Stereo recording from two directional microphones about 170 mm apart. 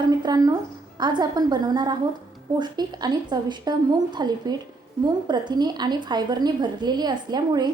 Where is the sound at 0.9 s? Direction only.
25° right (ahead or behind).